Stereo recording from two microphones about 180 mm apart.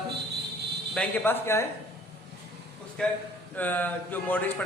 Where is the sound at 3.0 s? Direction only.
5° left (ahead or behind).